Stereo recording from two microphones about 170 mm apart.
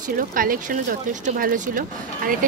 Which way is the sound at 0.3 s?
55° right (ahead or behind).